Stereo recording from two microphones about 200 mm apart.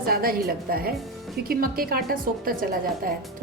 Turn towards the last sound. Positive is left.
turn(degrees=-45)  # may be behind; listen again after turning